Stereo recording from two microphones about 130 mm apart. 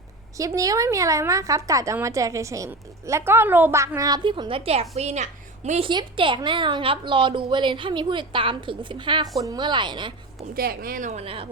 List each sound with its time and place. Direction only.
0.3 s a woman's voice: 25° right (ahead or behind); by 5.8 s 65° right (ahead or behind)
5.8 s a woman's voice: 40° right (ahead or behind)
10.9 s a woman's voice: 75° right (ahead or behind)
11.2 s a woman's voice: 45° right (ahead or behind)